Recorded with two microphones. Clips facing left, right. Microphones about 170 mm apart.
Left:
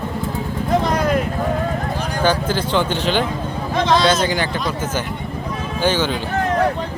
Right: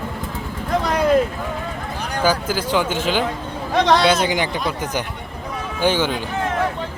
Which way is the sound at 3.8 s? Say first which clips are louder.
Right 1 dB; 65° right (ahead or behind).